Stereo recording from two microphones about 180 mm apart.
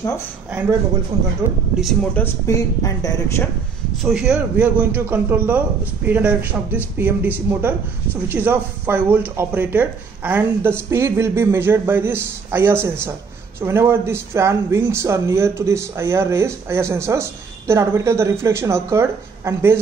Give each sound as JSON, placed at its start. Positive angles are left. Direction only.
{"t": 0.5, "sound": "speech", "side_deg": -10}
{"t": 2.1, "sound": "a woman's voice", "side_deg": 15}
{"t": 4.0, "sound": "speech", "side_deg": -5}